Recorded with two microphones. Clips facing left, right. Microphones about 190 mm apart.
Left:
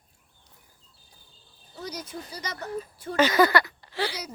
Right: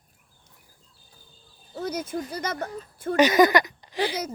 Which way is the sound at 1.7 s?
50° right (ahead or behind).